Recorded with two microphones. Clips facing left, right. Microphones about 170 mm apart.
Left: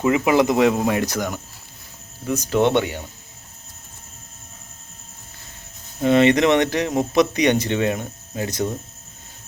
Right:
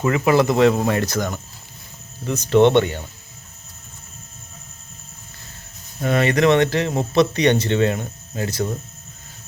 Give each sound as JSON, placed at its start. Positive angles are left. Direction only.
{"t": 0.0, "sound": "speech", "side_deg": 15}
{"t": 6.0, "sound": "speech", "side_deg": 20}